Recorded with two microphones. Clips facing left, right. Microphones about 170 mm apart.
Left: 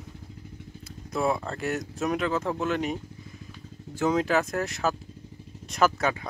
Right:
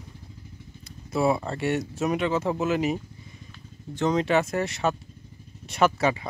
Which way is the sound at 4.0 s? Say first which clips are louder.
Right 1 dB; 5° left (ahead or behind).